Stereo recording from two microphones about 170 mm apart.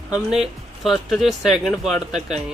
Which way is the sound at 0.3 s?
Centre (ahead or behind).